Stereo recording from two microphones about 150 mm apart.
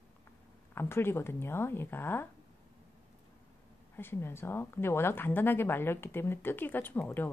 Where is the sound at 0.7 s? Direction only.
15° left (ahead or behind).